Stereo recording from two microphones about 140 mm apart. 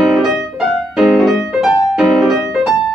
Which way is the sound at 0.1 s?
Centre (ahead or behind).